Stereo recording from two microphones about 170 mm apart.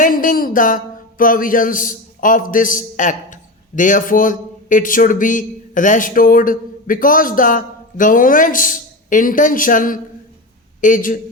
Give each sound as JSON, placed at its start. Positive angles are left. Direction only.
{"t": 0.0, "sound": "speech", "side_deg": 50}